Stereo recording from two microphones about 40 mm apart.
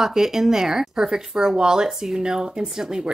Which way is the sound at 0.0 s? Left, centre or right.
Centre.